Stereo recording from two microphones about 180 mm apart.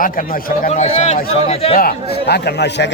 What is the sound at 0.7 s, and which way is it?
Speech, 35° left (ahead or behind).